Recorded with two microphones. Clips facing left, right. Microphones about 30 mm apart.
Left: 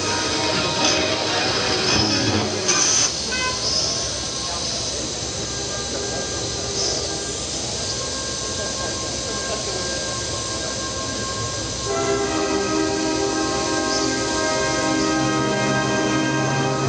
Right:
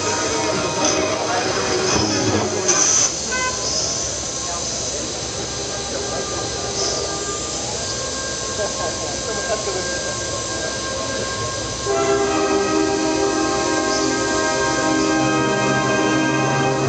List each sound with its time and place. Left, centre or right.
0.0 s music: left
11.9 s train: centre
13.8 s music: centre